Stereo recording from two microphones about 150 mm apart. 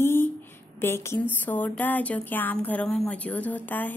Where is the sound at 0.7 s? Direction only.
15° left (ahead or behind).